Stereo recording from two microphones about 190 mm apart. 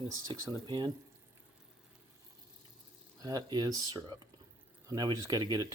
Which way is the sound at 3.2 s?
20° right (ahead or behind).